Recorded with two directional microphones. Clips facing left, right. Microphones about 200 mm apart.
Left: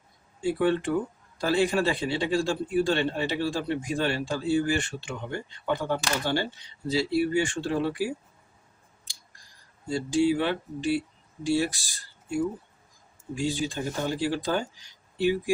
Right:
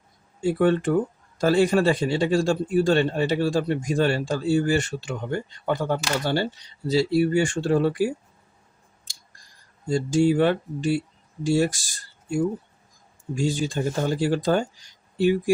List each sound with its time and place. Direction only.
0.4 s speech: 45° right (ahead or behind)
9.1 s clicking: 45° right (ahead or behind)
9.9 s speech: 45° right (ahead or behind)